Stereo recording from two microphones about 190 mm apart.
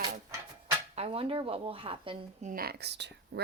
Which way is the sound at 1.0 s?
30° right (ahead or behind).